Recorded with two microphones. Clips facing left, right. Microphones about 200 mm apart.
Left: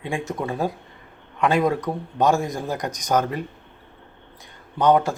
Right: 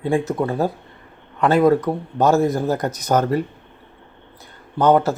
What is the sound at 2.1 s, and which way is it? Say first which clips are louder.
Speech: right 4 dB; 5° right (ahead or behind).